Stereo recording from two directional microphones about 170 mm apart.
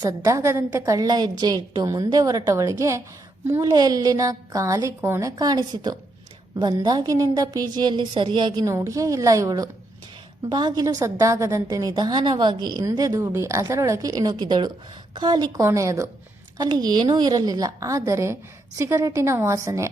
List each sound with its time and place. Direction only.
0.0 s a woman's voice: 20° right (ahead or behind)